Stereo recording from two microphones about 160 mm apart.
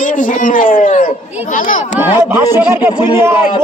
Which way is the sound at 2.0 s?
15° right (ahead or behind).